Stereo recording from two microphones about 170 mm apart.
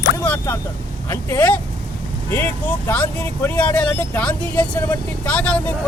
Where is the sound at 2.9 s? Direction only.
10° left (ahead or behind).